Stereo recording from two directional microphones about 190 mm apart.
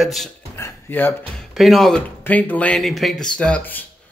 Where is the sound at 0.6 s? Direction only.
10° left (ahead or behind).